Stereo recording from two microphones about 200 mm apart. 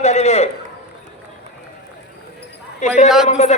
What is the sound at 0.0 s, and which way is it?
Speech, 35° left (ahead or behind).